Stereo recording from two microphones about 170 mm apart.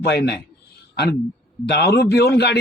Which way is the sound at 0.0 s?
75° left (ahead or behind).